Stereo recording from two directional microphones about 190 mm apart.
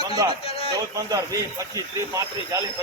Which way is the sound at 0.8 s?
20° right (ahead or behind).